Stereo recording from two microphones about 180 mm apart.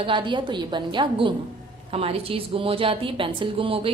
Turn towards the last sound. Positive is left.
turn(degrees=-30)  # may be behind; listen again after turning